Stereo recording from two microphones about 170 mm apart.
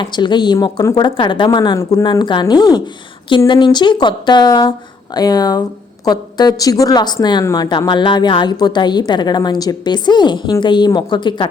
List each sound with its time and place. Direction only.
0.0 s speech: 25° left (ahead or behind)